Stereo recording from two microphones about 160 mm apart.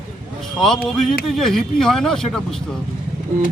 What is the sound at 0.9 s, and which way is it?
A man's voice, centre (ahead or behind).